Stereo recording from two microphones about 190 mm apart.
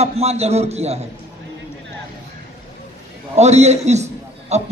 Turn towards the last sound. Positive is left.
turn(degrees=-35)  # may be behind; listen again after turning